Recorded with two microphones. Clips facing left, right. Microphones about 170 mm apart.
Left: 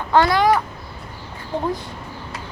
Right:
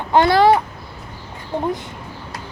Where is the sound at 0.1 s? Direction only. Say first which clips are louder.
Right 2 dB; 20° right (ahead or behind).